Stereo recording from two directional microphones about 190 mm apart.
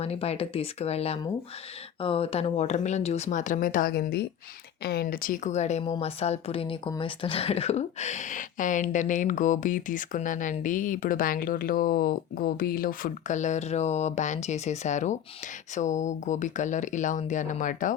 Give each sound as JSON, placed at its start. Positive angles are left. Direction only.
{"t": 0.0, "sound": "speech", "side_deg": 35}